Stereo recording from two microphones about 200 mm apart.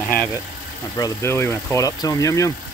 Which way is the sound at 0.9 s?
15° left (ahead or behind).